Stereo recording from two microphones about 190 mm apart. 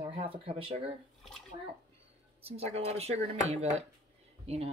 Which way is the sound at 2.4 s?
35° right (ahead or behind).